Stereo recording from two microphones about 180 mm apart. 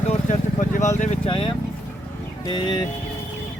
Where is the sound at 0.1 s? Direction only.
45° left (ahead or behind).